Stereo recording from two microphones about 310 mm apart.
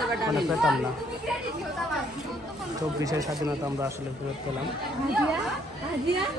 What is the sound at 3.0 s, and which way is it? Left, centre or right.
Speech, centre.